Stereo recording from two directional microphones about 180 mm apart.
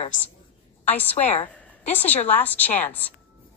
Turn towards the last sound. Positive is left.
turn(degrees=10)  # may be behind; listen again after turning